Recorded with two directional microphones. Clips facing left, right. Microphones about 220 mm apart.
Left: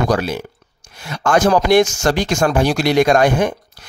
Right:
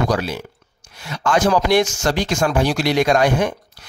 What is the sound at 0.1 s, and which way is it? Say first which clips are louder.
Speech: left 3 dB; 50° left (ahead or behind).